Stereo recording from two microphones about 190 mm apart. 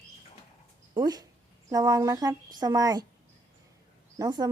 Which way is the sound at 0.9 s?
20° right (ahead or behind).